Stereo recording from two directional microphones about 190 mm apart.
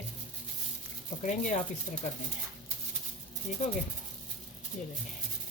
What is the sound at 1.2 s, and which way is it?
Speech, 40° left (ahead or behind).